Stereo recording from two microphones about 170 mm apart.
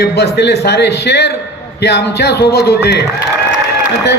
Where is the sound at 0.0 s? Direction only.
75° left (ahead or behind).